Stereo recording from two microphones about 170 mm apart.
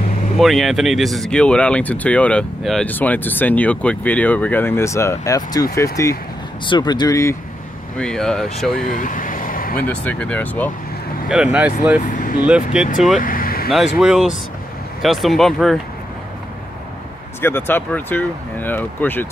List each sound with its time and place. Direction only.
0.4 s speech: centre (ahead or behind); by 7.3 s 20° left (ahead or behind)
8.0 s speech: 5° left (ahead or behind)
8.8 s vehicle: 50° left (ahead or behind)
9.8 s speech: 10° left (ahead or behind)
11.5 s speech: 10° right (ahead or behind)
12.0 s speech: 50° left (ahead or behind)
12.4 s speech: 5° right (ahead or behind)
13.2 s vehicle: 55° left (ahead or behind)
13.9 s speech: 5° right (ahead or behind)
17.4 s speech: 15° left (ahead or behind)